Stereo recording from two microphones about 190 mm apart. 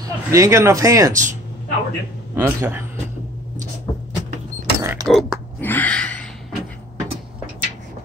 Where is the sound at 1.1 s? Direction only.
40° right (ahead or behind).